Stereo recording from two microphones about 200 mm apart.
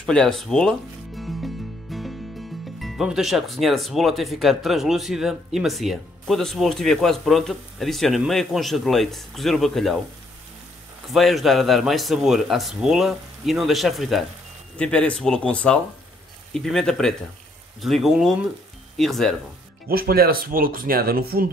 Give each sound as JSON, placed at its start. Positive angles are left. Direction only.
{"t": 0.0, "sound": "music", "side_deg": 5}
{"t": 2.8, "sound": "speech", "side_deg": 0}
{"t": 11.1, "sound": "speech", "side_deg": 0}
{"t": 19.9, "sound": "speech", "side_deg": -50}